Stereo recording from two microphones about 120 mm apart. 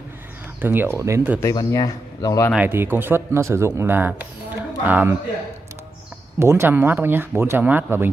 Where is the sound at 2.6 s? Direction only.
15° right (ahead or behind).